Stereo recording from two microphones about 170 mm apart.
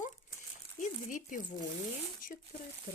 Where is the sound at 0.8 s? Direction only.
50° left (ahead or behind).